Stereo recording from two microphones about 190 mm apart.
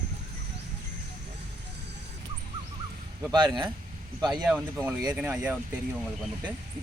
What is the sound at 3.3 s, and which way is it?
Speech, 25° right (ahead or behind).